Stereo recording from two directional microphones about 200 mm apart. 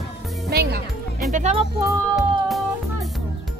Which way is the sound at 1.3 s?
35° right (ahead or behind).